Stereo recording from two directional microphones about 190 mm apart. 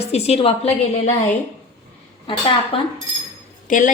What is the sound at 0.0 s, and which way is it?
A woman's voice, 35° left (ahead or behind).